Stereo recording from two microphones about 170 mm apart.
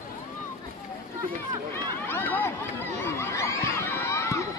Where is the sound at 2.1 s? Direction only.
10° left (ahead or behind).